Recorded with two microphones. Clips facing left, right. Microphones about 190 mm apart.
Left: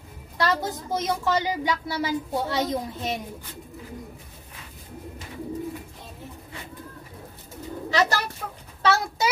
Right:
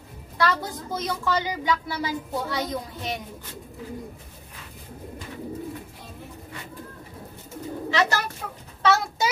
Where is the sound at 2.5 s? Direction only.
25° left (ahead or behind).